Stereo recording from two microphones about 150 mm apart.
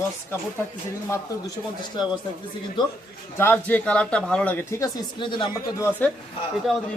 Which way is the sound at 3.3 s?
15° left (ahead or behind).